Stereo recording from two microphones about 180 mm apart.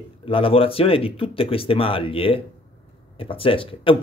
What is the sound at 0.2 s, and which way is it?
A man's voice, 30° left (ahead or behind).